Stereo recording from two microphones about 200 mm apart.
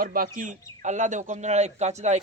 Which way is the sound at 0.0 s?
45° right (ahead or behind).